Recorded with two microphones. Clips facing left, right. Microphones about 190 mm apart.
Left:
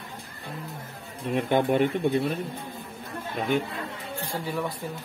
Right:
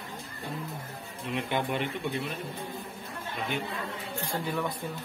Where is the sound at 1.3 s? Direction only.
45° left (ahead or behind).